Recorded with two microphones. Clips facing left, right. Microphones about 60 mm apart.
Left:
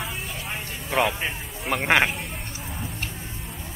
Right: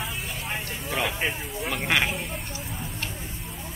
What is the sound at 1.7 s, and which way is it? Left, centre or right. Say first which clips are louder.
Speech: left 5 dB; left.